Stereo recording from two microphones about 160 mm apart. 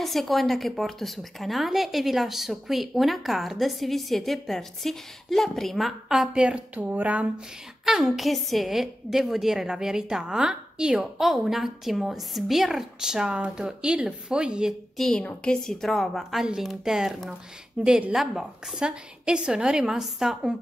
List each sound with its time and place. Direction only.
0.0 s a woman's voice: centre (ahead or behind)